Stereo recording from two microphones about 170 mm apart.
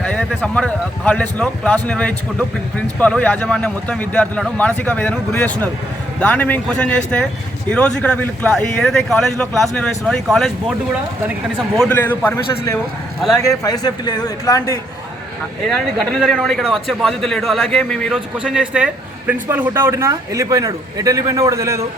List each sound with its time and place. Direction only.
0.0 s a man's voice: 5° left (ahead or behind)
15.6 s a man's voice: 5° left (ahead or behind); by 21.8 s 15° right (ahead or behind)